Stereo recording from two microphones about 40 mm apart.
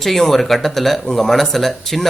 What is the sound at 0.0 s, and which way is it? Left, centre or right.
Speech, centre.